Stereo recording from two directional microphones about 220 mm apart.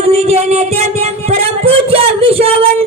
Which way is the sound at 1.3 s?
25° right (ahead or behind).